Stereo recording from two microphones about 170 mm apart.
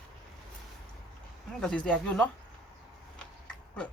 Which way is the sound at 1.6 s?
5° left (ahead or behind).